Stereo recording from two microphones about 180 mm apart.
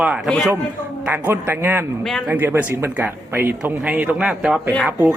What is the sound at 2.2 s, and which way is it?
Speech, 10° right (ahead or behind).